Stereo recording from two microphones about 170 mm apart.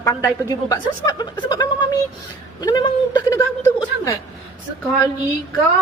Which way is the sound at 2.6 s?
25° left (ahead or behind).